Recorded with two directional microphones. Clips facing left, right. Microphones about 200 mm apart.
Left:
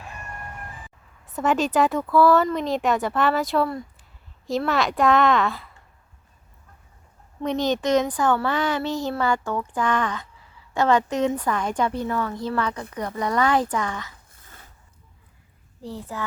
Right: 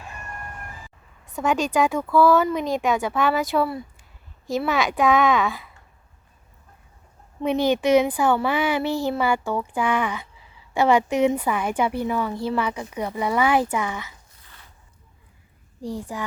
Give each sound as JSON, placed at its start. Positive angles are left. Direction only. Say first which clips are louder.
{"t": 1.2, "sound": "speech", "louder": "left 1 dB", "side_deg": 0}
{"t": 7.4, "sound": "a woman's voice", "louder": "right 3 dB", "side_deg": -10}
{"t": 14.4, "sound": "a sound", "louder": "left 3 dB", "side_deg": 45}
{"t": 15.8, "sound": "a woman's voice", "louder": "right 3 dB", "side_deg": -15}